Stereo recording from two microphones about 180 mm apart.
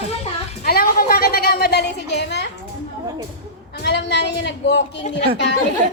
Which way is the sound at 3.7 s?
65° left (ahead or behind).